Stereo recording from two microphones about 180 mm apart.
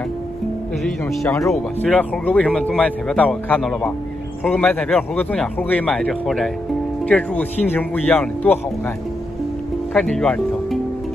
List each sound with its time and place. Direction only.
1.2 s speech: 15° left (ahead or behind)
1.5 s speech: 5° left (ahead or behind)
9.9 s speech: 5° left (ahead or behind)